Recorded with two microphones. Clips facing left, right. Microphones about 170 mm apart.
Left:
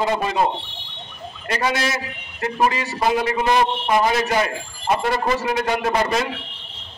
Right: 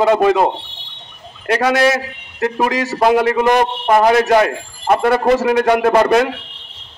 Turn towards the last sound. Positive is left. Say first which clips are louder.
# right 8 dB
turn(degrees=-65)  # may be behind; listen again after turning